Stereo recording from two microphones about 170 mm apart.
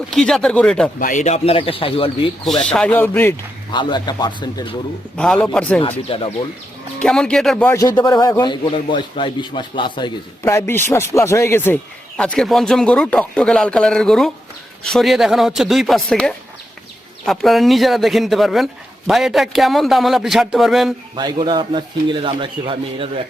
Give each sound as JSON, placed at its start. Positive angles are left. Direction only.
{"t": 0.1, "sound": "speech", "side_deg": 5}
{"t": 0.9, "sound": "speech", "side_deg": 50}
{"t": 2.4, "sound": "a man's voice", "side_deg": 0}
{"t": 3.7, "sound": "a man's voice", "side_deg": 25}
{"t": 5.1, "sound": "a man's voice", "side_deg": 5}
{"t": 6.1, "sound": "speech", "side_deg": 30}
{"t": 7.0, "sound": "speech", "side_deg": 5}
{"t": 7.8, "sound": "a man's voice", "side_deg": 20}
{"t": 10.4, "sound": "a man's voice", "side_deg": 15}
{"t": 21.2, "sound": "a man's voice", "side_deg": -25}